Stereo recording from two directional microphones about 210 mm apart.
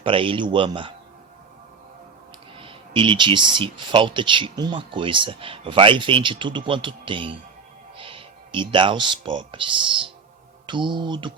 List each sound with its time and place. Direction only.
0.0 s speech: 25° right (ahead or behind)
2.6 s speech: 25° right (ahead or behind)
7.9 s music: 25° right (ahead or behind)
9.5 s speech: 25° right (ahead or behind)